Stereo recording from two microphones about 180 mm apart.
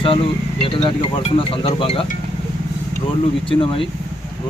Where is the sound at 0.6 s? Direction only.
30° left (ahead or behind).